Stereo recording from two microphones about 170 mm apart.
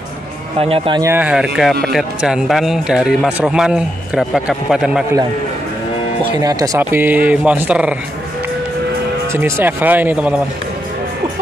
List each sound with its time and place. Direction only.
0.6 s a man's voice: 35° right (ahead or behind)
1.0 s a man's voice: 10° right (ahead or behind)
6.3 s speech: 20° right (ahead or behind)
9.3 s speech: 15° right (ahead or behind)